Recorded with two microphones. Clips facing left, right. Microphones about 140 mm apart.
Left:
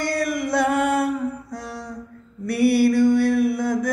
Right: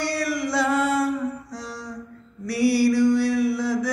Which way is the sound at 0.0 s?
50° left (ahead or behind).